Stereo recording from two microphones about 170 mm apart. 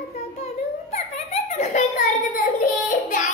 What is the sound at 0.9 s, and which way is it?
Giggle, 40° left (ahead or behind).